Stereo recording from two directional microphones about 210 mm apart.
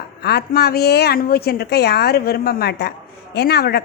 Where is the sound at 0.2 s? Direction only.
50° left (ahead or behind).